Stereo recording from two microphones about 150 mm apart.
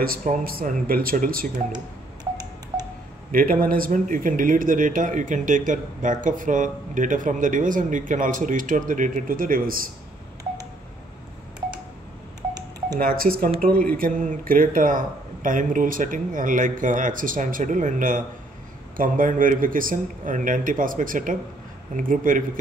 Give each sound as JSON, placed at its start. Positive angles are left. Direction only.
{"t": 0.0, "sound": "speech", "side_deg": -70}
{"t": 3.3, "sound": "speech", "side_deg": -70}
{"t": 13.0, "sound": "speech", "side_deg": -75}